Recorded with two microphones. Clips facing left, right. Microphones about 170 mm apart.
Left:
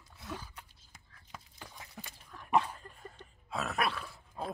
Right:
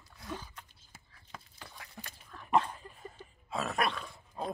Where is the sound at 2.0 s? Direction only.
10° left (ahead or behind).